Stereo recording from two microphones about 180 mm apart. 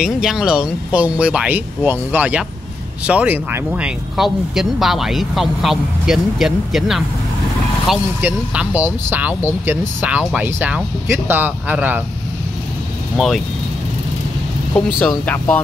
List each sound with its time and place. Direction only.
0.0 s speech: centre (ahead or behind)
13.2 s speech: centre (ahead or behind)
14.7 s speech: 5° left (ahead or behind)